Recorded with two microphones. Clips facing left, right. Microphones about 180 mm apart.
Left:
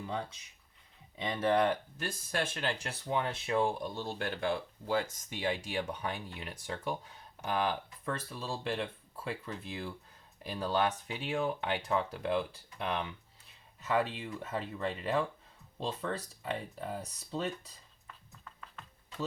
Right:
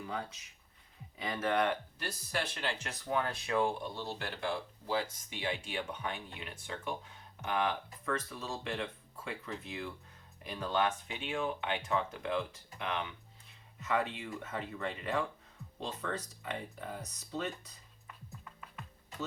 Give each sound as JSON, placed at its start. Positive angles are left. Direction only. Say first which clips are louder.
{"t": 1.1, "sound": "speech", "louder": "left 3 dB", "side_deg": 25}
{"t": 2.0, "sound": "speech", "louder": "left 2 dB", "side_deg": 50}
{"t": 3.9, "sound": "speech", "louder": "left 3 dB", "side_deg": 50}